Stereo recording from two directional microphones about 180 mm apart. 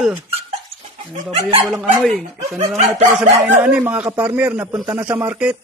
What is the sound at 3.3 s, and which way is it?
Speech, 10° right (ahead or behind).